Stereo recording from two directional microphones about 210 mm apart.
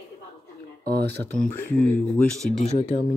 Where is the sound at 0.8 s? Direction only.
50° right (ahead or behind).